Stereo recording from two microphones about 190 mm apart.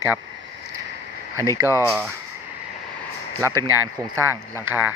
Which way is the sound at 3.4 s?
15° right (ahead or behind).